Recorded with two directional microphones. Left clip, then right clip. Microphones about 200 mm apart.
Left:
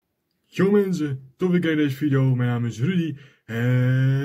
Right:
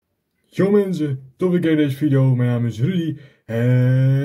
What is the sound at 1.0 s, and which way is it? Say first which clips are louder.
Speech: right 4 dB; 35° left (ahead or behind).